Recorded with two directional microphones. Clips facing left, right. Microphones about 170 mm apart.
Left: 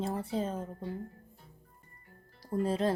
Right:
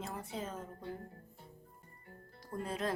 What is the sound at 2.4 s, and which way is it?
Speech, 30° left (ahead or behind).